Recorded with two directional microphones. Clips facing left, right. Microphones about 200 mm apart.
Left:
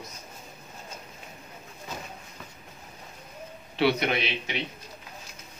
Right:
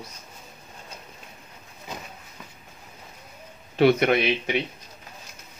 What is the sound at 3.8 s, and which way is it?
Speech, 50° right (ahead or behind).